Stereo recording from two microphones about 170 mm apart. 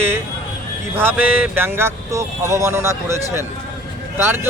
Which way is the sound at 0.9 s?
10° right (ahead or behind).